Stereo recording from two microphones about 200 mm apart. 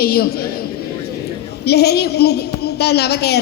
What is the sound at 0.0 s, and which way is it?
Speech, 50° left (ahead or behind).